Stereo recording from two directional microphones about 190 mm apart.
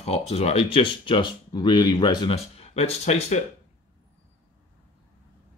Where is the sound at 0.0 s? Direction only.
35° left (ahead or behind).